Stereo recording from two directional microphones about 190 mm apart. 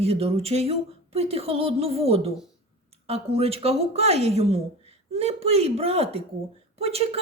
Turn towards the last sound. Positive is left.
turn(degrees=-30)  # may be behind; listen again after turning